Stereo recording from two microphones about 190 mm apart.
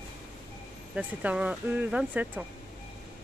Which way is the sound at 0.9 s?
5° right (ahead or behind).